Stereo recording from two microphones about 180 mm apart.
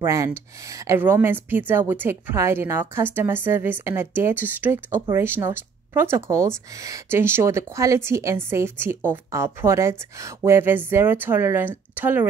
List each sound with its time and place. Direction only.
0.0 s a woman's voice: 15° right (ahead or behind)